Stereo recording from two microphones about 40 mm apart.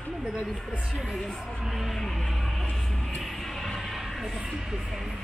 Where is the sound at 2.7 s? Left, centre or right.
Centre.